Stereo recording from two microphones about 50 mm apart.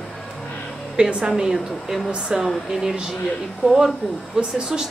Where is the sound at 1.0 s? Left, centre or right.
Centre.